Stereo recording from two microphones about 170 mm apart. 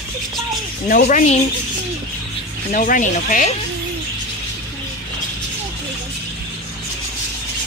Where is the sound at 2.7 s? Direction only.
50° left (ahead or behind).